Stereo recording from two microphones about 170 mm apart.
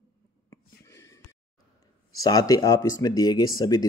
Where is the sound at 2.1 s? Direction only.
20° left (ahead or behind).